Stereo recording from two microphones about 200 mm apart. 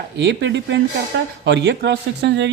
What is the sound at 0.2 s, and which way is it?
Speech, 60° right (ahead or behind).